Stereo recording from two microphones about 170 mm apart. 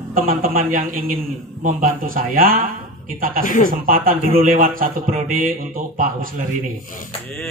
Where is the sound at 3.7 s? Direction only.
55° right (ahead or behind).